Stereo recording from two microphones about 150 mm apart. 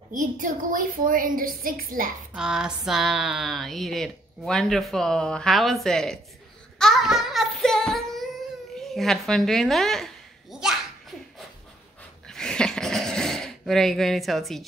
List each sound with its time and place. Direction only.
0.1 s a woman's voice: 60° right (ahead or behind)
2.3 s speech: 5° right (ahead or behind)
6.8 s child singing: centre (ahead or behind)
8.7 s a sound: centre (ahead or behind)